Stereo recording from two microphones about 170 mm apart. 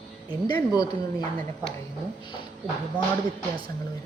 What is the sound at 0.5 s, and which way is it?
Speech, 20° left (ahead or behind).